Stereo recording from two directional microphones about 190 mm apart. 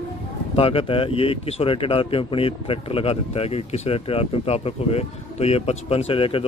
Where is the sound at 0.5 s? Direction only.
30° left (ahead or behind).